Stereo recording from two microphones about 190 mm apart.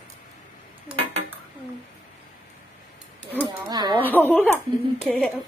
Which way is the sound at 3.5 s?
20° right (ahead or behind).